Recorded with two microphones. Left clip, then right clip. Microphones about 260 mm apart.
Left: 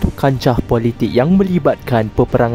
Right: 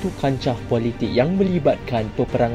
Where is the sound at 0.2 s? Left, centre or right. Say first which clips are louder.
Left 8 dB; left.